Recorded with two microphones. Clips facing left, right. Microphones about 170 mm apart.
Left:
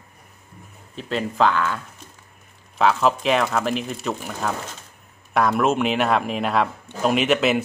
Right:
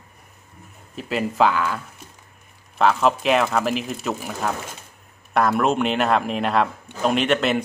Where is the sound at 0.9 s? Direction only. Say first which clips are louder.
Right 1 dB; 5° right (ahead or behind).